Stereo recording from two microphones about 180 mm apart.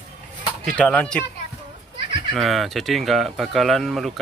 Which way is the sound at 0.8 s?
5° left (ahead or behind).